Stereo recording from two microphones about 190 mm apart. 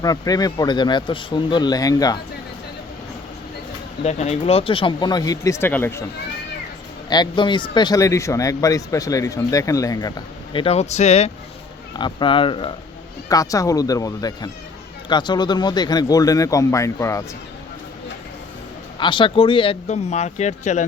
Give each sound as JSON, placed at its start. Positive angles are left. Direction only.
{"t": 0.0, "sound": "speech", "side_deg": 20}
{"t": 4.0, "sound": "speech", "side_deg": 35}
{"t": 7.1, "sound": "speech", "side_deg": 25}
{"t": 11.9, "sound": "speech", "side_deg": 25}
{"t": 18.9, "sound": "speech", "side_deg": 25}